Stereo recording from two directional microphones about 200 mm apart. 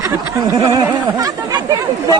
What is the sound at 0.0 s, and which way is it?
Speech, 15° right (ahead or behind).